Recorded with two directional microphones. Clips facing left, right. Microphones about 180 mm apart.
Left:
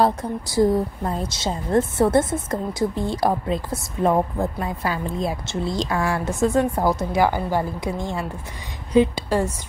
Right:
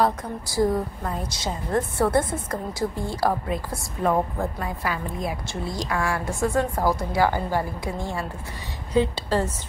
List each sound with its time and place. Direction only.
0.0 s a woman's voice: 30° left (ahead or behind)